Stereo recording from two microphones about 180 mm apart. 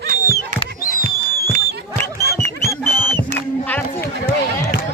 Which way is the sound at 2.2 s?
15° left (ahead or behind).